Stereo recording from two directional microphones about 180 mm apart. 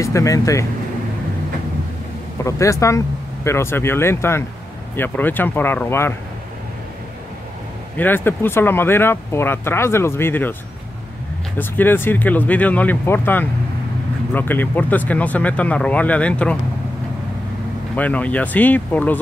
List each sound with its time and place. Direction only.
0.0 s speech: 20° left (ahead or behind)
2.4 s speech: 15° left (ahead or behind)
8.0 s speech: 10° left (ahead or behind)
11.5 s speech: 10° left (ahead or behind)
17.9 s speech: 10° left (ahead or behind)